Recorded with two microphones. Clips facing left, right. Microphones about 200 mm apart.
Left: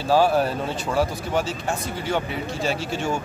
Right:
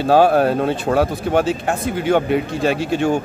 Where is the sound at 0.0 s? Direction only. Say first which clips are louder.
Right 6 dB; 60° right (ahead or behind).